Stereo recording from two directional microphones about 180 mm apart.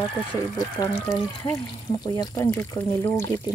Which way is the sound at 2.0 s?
20° left (ahead or behind).